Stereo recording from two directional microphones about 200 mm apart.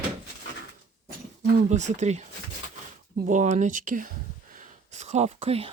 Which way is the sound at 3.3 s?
35° right (ahead or behind).